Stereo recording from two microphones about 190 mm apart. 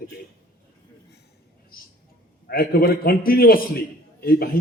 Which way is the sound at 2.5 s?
50° left (ahead or behind).